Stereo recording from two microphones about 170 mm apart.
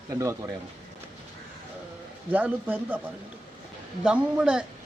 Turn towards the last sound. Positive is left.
turn(degrees=-5)  # may be behind; listen again after turning